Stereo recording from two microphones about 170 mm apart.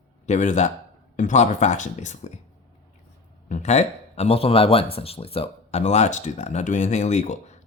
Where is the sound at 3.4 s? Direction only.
45° left (ahead or behind).